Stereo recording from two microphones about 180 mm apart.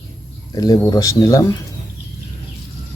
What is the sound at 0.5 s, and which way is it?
Speech, 20° left (ahead or behind).